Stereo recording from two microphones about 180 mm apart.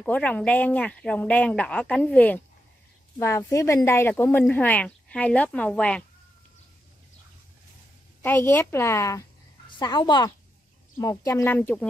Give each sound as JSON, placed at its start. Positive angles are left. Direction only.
{"t": 0.0, "sound": "speech", "side_deg": 10}
{"t": 8.2, "sound": "a woman's voice", "side_deg": 10}